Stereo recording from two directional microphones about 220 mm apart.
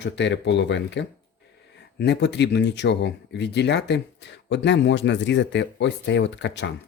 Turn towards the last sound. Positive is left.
turn(degrees=55)  # may be behind; listen again after turning